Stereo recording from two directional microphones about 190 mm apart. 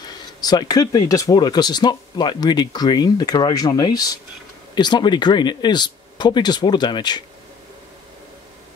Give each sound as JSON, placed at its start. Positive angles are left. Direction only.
{"t": 0.0, "sound": "speech", "side_deg": 20}